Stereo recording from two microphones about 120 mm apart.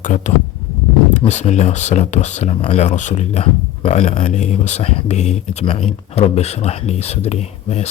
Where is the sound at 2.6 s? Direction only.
60° left (ahead or behind).